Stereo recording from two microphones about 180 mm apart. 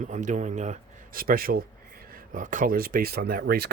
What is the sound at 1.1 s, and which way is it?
Speech, 55° right (ahead or behind).